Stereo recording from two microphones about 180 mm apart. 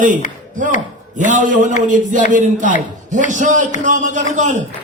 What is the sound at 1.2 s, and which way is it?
A man's voice, 45° right (ahead or behind).